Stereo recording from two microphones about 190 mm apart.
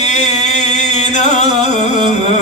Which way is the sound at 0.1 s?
35° left (ahead or behind).